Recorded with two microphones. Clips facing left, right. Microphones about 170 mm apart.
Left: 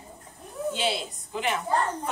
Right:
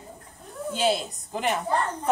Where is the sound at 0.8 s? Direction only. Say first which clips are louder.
Right 4 dB; 45° right (ahead or behind).